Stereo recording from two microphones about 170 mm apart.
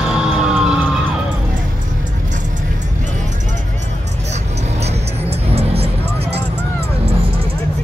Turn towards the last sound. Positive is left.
turn(degrees=-35)  # may be behind; listen again after turning